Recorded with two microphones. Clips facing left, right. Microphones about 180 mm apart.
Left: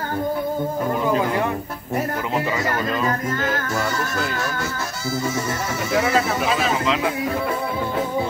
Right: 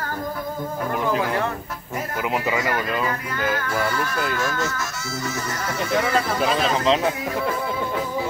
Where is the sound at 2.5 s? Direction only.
40° left (ahead or behind).